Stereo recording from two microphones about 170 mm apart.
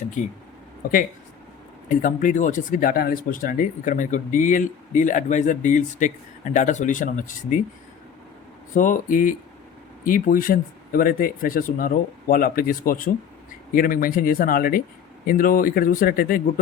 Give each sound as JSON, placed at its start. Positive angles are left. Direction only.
{"t": 0.2, "sound": "speech", "side_deg": 45}
{"t": 1.9, "sound": "speech", "side_deg": 50}
{"t": 8.7, "sound": "speech", "side_deg": 50}